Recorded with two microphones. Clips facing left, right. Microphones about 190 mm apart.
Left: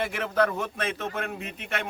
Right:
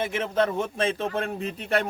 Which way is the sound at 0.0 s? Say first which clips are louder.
Right 1 dB; 20° right (ahead or behind).